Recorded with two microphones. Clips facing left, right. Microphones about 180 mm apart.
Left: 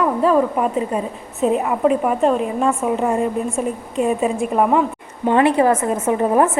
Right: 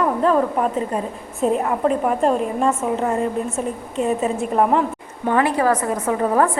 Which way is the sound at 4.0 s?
10° left (ahead or behind).